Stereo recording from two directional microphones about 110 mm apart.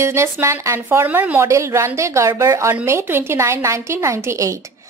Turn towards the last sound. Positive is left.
turn(degrees=-25)  # may be behind; listen again after turning